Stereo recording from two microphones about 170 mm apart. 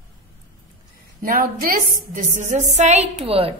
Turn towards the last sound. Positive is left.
turn(degrees=-35)  # may be behind; listen again after turning